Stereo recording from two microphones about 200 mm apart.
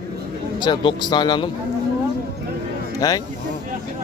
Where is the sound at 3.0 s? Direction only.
20° left (ahead or behind).